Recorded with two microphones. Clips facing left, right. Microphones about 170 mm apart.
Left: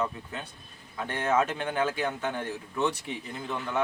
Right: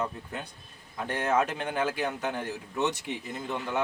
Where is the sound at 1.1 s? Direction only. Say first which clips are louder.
Even; 10° right (ahead or behind).